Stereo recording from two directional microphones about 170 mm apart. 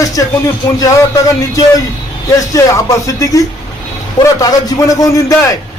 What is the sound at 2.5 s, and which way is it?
A man's voice, 20° left (ahead or behind).